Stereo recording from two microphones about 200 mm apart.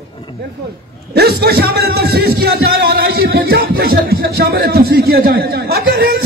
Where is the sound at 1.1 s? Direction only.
50° right (ahead or behind).